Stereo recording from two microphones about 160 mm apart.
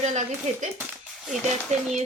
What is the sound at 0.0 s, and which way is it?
Speech, 50° right (ahead or behind).